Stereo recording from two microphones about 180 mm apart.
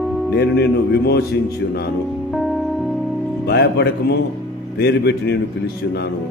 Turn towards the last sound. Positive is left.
turn(degrees=65)  # may be behind; listen again after turning